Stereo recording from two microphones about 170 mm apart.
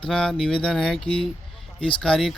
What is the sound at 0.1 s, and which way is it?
Speech, 5° left (ahead or behind).